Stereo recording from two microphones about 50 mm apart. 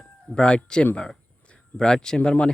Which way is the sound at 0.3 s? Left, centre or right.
Centre.